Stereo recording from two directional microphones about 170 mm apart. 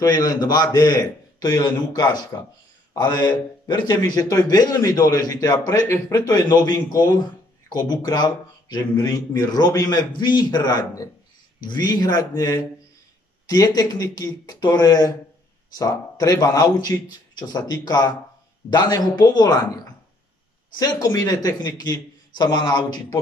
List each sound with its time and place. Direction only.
0.0 s speech: 25° left (ahead or behind)